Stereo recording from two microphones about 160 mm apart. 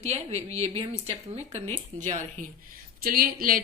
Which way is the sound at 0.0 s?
45° right (ahead or behind).